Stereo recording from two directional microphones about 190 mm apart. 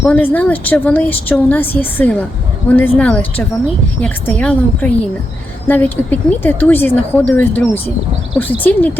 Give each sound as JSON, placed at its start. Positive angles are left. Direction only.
{"t": 0.0, "sound": "speech", "side_deg": 10}